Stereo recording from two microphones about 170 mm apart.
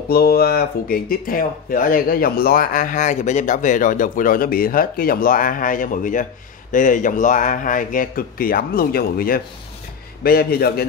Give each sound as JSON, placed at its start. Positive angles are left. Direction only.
{"t": 0.1, "sound": "speech", "side_deg": 65}